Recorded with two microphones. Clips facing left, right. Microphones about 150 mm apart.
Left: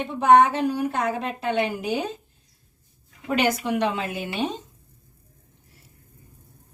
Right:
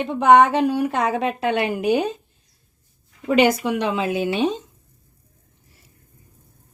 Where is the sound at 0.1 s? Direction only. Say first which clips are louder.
Right 3 dB; 85° right; by 2.0 s 65° right (ahead or behind).